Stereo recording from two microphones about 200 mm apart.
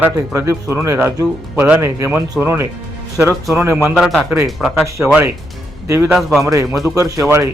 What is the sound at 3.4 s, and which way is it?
Speech, centre (ahead or behind).